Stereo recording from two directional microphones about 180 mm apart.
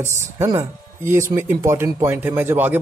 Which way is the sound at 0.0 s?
15° right (ahead or behind).